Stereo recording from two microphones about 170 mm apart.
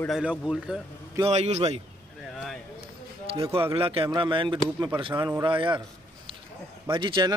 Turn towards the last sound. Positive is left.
turn(degrees=-25)  # may be behind; listen again after turning